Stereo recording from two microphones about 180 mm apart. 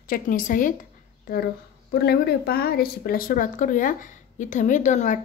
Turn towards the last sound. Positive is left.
turn(degrees=40)  # may be behind; listen again after turning